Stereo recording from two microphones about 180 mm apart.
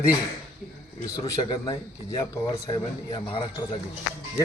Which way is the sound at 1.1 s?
20° left (ahead or behind).